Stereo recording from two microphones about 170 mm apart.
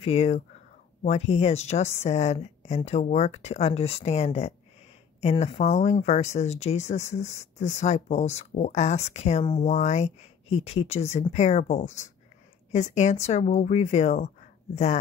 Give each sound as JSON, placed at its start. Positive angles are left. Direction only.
{"t": 0.0, "sound": "speech", "side_deg": 40}
{"t": 9.7, "sound": "speech", "side_deg": 45}